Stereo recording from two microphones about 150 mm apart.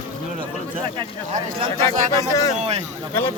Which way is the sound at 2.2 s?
20° left (ahead or behind).